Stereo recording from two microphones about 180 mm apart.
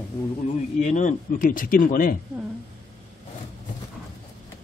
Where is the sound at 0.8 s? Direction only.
45° left (ahead or behind).